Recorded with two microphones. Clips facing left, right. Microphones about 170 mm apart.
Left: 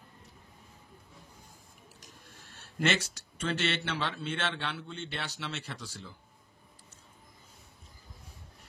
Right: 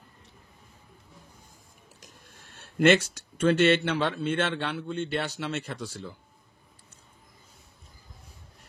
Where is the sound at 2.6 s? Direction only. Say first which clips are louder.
Right 10 dB; 55° right (ahead or behind).